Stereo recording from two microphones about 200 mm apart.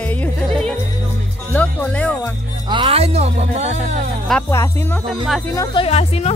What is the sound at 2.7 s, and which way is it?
Speech, 25° right (ahead or behind).